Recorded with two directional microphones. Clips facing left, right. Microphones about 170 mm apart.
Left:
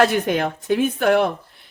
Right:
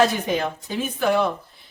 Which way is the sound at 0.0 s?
60° left (ahead or behind).